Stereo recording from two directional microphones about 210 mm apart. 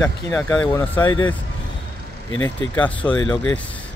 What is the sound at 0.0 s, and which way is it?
Speech, 5° left (ahead or behind).